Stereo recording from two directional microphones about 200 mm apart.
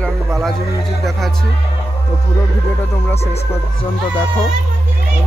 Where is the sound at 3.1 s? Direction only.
30° left (ahead or behind).